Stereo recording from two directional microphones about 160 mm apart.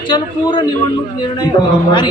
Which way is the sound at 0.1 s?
30° left (ahead or behind).